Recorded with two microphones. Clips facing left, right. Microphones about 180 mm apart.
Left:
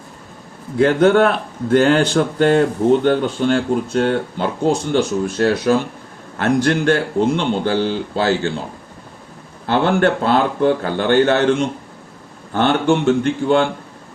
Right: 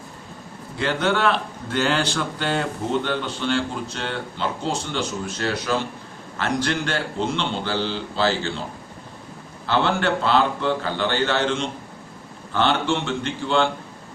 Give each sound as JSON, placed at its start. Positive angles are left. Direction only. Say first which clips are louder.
{"t": 0.8, "sound": "speech", "louder": "left 10 dB", "side_deg": 50}
{"t": 9.6, "sound": "speech", "louder": "left 6 dB", "side_deg": 50}
{"t": 12.5, "sound": "speech", "louder": "left 6 dB", "side_deg": 50}